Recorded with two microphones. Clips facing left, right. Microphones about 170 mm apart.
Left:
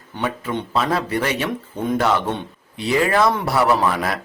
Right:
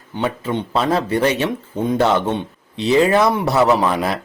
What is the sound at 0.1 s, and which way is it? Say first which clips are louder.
Speech: right 3 dB; 25° right (ahead or behind).